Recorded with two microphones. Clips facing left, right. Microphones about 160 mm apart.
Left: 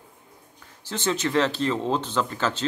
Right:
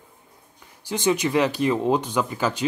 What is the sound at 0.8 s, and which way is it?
Speech, 15° right (ahead or behind).